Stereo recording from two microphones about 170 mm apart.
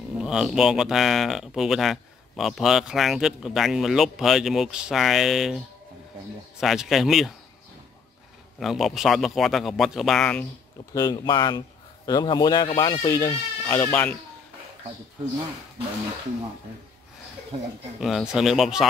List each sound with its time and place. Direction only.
0.2 s speech: 5° right (ahead or behind)
6.6 s speech: centre (ahead or behind)
8.5 s speech: centre (ahead or behind)
10.9 s speech: 20° left (ahead or behind)
18.0 s speech: centre (ahead or behind)